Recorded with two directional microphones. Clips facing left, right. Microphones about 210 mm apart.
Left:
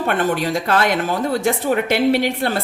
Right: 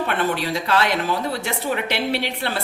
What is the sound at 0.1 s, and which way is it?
Speech, 50° left (ahead or behind).